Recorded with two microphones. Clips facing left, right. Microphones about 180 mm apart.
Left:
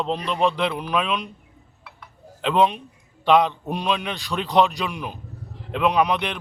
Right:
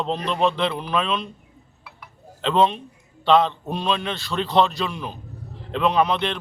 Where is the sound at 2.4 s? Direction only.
10° left (ahead or behind).